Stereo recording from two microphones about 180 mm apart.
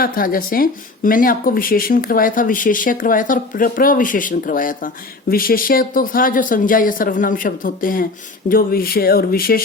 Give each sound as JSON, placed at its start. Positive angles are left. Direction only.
{"t": 0.0, "sound": "speech", "side_deg": 50}